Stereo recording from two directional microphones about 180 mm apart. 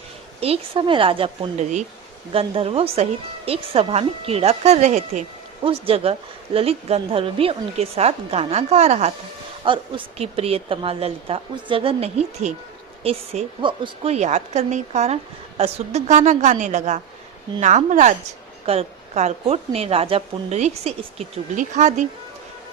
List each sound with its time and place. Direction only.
0.3 s a woman's voice: 35° right (ahead or behind)
9.6 s a woman's voice: 25° right (ahead or behind)